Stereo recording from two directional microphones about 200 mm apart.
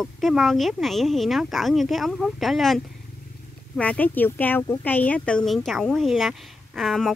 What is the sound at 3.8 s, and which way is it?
Speech, 5° left (ahead or behind).